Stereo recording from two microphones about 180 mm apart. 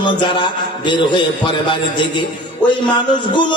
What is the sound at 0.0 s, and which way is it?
Music, 25° left (ahead or behind).